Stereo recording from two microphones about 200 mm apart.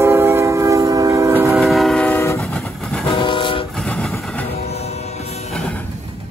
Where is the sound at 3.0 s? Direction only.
25° left (ahead or behind).